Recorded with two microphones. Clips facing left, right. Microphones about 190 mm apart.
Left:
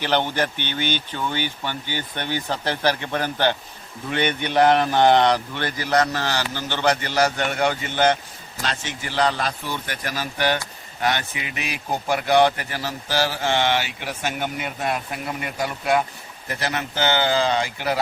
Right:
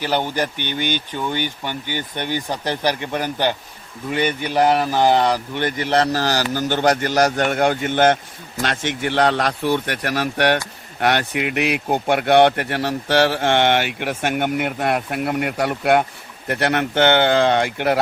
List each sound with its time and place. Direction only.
0.0 s speech: 10° right (ahead or behind)
5.6 s a man's voice: 25° right (ahead or behind); by 8.2 s 50° right (ahead or behind)
8.6 s speech: 60° right (ahead or behind)